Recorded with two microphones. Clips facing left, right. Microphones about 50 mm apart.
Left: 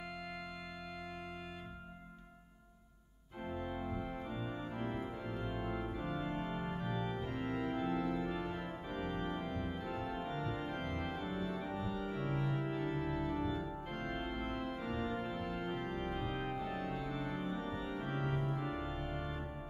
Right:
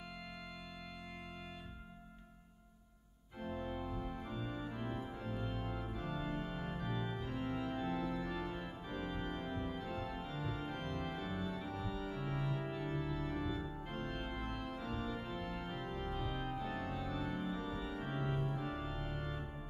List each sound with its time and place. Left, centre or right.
3.6 s organ: centre
3.9 s music: left
4.3 s music: centre
5.5 s organ: centre
9.5 s organ: centre
18.0 s organ: centre
18.5 s organ: centre